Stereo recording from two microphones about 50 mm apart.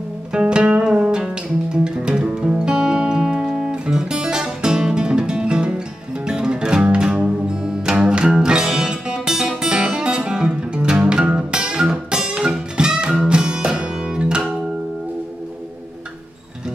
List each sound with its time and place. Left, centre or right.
0.3 s music: centre